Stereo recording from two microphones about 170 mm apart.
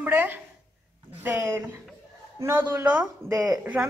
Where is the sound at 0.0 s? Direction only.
10° right (ahead or behind).